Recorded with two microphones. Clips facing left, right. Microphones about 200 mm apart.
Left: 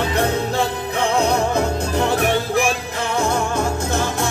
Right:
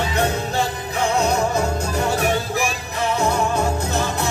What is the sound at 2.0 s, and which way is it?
Music, 60° left (ahead or behind).